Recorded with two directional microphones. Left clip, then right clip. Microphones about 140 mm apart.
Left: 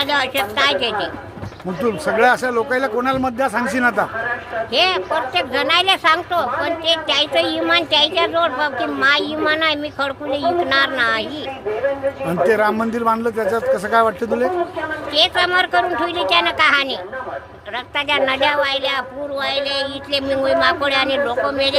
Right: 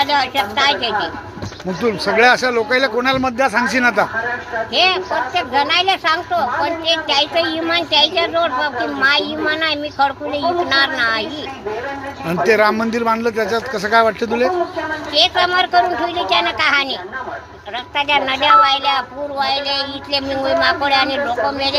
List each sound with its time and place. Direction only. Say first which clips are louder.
0.0 s a woman's voice: right 2 dB; 30° left (ahead or behind)
2.0 s speech: right 3 dB; 10° left (ahead or behind)
4.7 s a woman's voice: right 1 dB; 30° left (ahead or behind)
12.2 s speech: right 3 dB; 5° left (ahead or behind)
15.1 s a woman's voice: right 1 dB; 25° left (ahead or behind)
17.9 s a woman's voice: right 1 dB; 25° left (ahead or behind)